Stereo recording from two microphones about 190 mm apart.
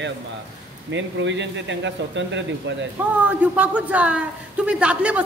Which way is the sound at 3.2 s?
5° right (ahead or behind).